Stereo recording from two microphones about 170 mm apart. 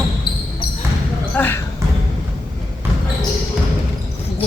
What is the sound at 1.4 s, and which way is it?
Speech, 10° left (ahead or behind).